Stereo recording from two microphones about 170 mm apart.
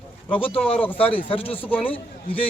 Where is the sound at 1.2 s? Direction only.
30° left (ahead or behind).